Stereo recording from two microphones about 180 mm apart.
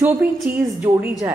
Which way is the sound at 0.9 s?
20° right (ahead or behind).